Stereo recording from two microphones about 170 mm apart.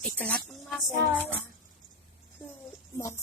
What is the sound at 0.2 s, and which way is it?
Speech, 10° left (ahead or behind).